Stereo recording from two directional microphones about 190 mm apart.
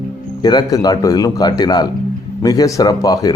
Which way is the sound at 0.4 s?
20° left (ahead or behind).